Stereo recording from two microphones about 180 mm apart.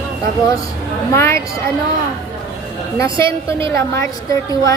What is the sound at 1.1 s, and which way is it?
Speech, 15° left (ahead or behind).